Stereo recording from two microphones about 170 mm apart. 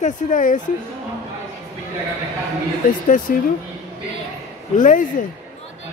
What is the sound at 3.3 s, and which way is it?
Speech, 55° left (ahead or behind).